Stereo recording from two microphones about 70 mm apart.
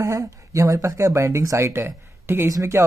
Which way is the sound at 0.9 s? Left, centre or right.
Right.